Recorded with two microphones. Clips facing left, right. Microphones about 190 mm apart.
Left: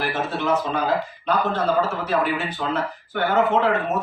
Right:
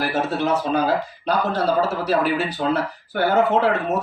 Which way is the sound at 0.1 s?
40° right (ahead or behind).